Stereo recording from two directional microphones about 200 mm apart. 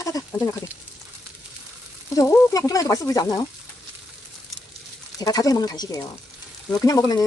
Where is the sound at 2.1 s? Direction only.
15° left (ahead or behind).